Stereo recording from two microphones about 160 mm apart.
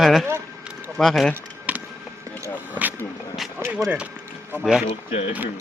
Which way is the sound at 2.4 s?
10° right (ahead or behind).